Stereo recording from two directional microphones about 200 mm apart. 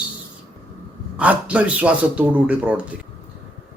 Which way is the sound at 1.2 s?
5° right (ahead or behind).